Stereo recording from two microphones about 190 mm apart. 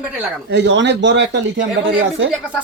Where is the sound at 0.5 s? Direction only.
65° right (ahead or behind).